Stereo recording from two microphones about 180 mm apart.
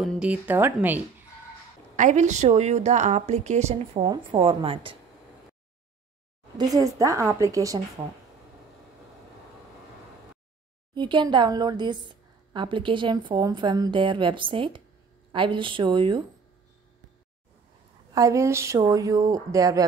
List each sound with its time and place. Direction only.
0.0 s speech: 5° right (ahead or behind)
2.0 s a woman's voice: 40° right (ahead or behind)
4.0 s a woman's voice: 25° right (ahead or behind)
6.6 s a woman's voice: 20° right (ahead or behind)
11.0 s a woman's voice: 25° right (ahead or behind)
18.1 s a woman's voice: 20° right (ahead or behind)